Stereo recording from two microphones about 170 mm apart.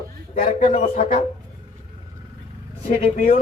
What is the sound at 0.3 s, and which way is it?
Speech, 35° left (ahead or behind).